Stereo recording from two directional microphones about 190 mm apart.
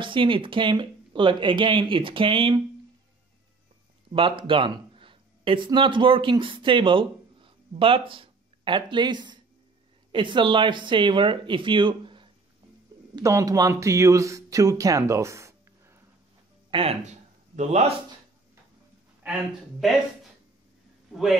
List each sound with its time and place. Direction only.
0.0 s speech: 25° right (ahead or behind)
4.1 s speech: 25° right (ahead or behind)
16.7 s speech: 30° right (ahead or behind)
21.1 s a man's voice: centre (ahead or behind)